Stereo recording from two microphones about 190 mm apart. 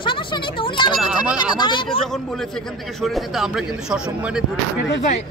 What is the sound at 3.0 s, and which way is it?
Speech, centre (ahead or behind).